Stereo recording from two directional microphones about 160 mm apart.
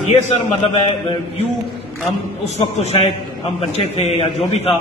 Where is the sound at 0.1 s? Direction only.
40° left (ahead or behind).